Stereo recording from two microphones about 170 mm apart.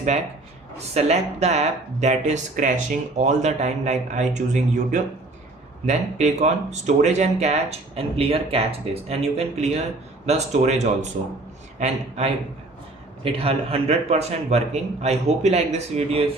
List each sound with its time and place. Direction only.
0.7 s a man's voice: 40° right (ahead or behind)
13.2 s speech: 35° right (ahead or behind)